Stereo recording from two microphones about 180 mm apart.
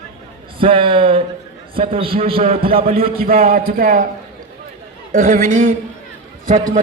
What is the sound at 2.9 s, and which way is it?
A man's voice, 55° right (ahead or behind).